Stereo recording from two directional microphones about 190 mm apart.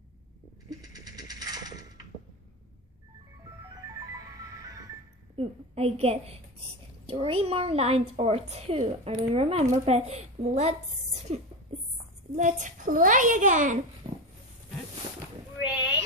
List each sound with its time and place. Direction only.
0.7 s mechanisms: 20° right (ahead or behind)
4.6 s music: 20° right (ahead or behind)
5.3 s a woman's voice: 30° right (ahead or behind)
14.0 s dog: 30° right (ahead or behind)